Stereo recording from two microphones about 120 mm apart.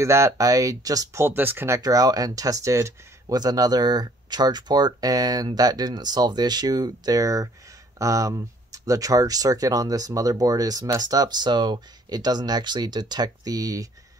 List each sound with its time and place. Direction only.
0.0 s speech: 25° right (ahead or behind)
1.8 s speech: 30° right (ahead or behind)